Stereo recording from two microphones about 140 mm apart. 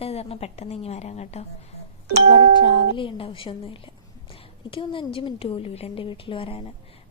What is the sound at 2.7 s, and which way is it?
A woman's voice, 35° left (ahead or behind).